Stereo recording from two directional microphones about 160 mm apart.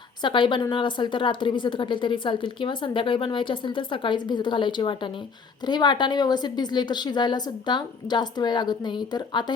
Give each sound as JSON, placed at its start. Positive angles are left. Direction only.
{"t": 0.2, "sound": "a woman's voice", "side_deg": 30}